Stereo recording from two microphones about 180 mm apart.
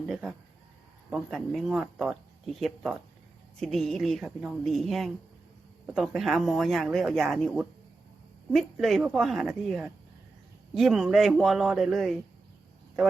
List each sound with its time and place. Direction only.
0.1 s speech: centre (ahead or behind)